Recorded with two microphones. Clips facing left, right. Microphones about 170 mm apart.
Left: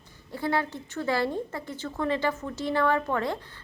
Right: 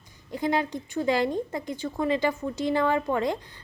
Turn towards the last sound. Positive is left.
turn(degrees=-15)  # may be behind; listen again after turning